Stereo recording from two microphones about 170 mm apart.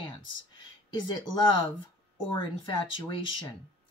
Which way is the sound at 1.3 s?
25° left (ahead or behind).